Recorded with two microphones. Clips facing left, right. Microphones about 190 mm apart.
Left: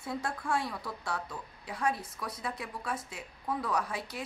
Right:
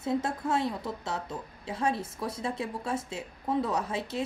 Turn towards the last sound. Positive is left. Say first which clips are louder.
# right 4 dB
turn(degrees=-25)  # may be behind; listen again after turning